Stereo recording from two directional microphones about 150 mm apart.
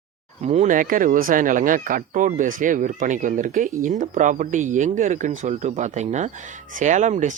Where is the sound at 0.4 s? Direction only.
50° right (ahead or behind).